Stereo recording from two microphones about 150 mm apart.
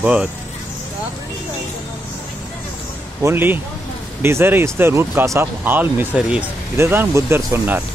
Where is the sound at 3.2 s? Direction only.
15° right (ahead or behind).